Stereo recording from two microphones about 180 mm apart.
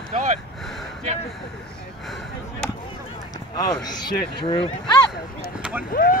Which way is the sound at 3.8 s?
25° left (ahead or behind).